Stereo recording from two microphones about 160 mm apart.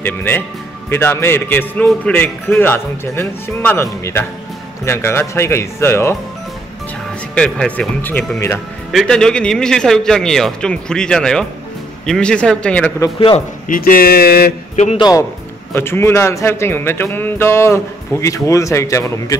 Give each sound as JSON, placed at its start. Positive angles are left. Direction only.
{"t": 0.0, "sound": "a man's voice", "side_deg": 10}
{"t": 7.3, "sound": "a man's voice", "side_deg": 5}
{"t": 13.7, "sound": "speech", "side_deg": 60}
{"t": 15.0, "sound": "a man's voice", "side_deg": 25}